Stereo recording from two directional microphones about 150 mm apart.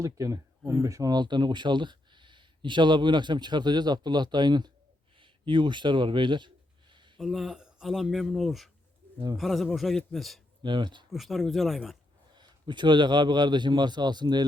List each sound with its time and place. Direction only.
0.0 s speech: 20° right (ahead or behind)
7.2 s speech: centre (ahead or behind)
10.6 s a man's voice: 30° right (ahead or behind)
11.1 s speech: centre (ahead or behind)
12.3 s a man's voice: 30° right (ahead or behind)